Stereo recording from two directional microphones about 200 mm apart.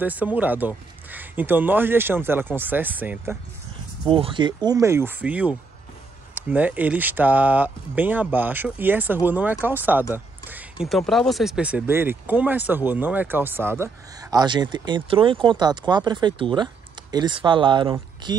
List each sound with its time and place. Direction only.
0.0 s speech: 10° right (ahead or behind)
4.1 s speech: 25° right (ahead or behind)
14.3 s speech: 20° right (ahead or behind)